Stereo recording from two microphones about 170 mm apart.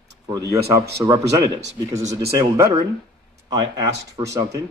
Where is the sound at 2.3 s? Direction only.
15° right (ahead or behind).